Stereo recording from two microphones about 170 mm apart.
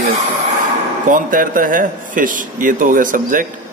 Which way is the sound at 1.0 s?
55° right (ahead or behind).